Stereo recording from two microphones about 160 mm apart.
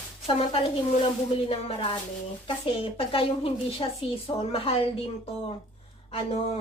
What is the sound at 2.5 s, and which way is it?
Speech, 35° left (ahead or behind).